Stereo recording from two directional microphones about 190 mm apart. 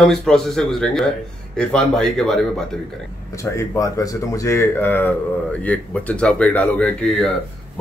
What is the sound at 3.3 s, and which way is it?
Speech, 15° left (ahead or behind).